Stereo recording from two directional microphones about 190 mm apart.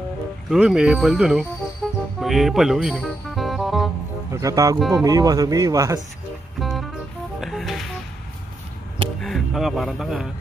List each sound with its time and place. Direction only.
0.5 s speech: 5° right (ahead or behind)
1.8 s music: centre (ahead or behind)
4.3 s speech: 15° right (ahead or behind)
6.6 s music: centre (ahead or behind)
9.2 s speech: centre (ahead or behind)